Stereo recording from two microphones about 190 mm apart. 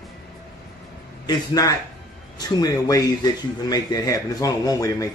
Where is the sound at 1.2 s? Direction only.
20° left (ahead or behind).